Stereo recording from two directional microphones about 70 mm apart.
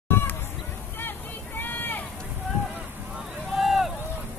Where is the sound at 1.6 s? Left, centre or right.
Left.